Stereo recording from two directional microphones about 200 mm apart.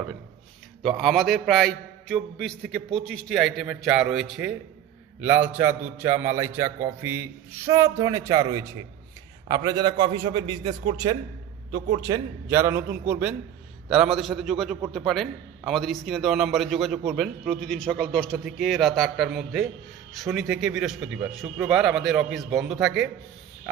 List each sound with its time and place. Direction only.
0.8 s a man's voice: centre (ahead or behind)